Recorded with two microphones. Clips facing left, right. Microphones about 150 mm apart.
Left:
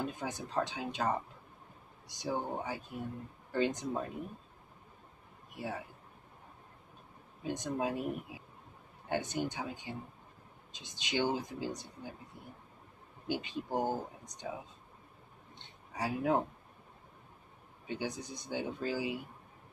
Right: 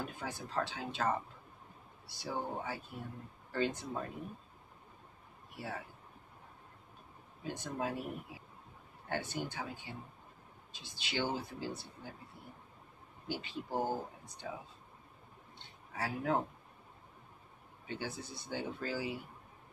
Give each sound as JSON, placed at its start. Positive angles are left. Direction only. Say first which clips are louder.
{"t": 0.0, "sound": "speech", "louder": "left 4 dB", "side_deg": 20}
{"t": 5.5, "sound": "speech", "louder": "left 3 dB", "side_deg": 15}
{"t": 7.4, "sound": "speech", "louder": "left 4 dB", "side_deg": 20}
{"t": 13.3, "sound": "speech", "louder": "left 4 dB", "side_deg": 15}
{"t": 15.9, "sound": "speech", "louder": "left 3 dB", "side_deg": 15}
{"t": 17.8, "sound": "speech", "louder": "left 3 dB", "side_deg": 15}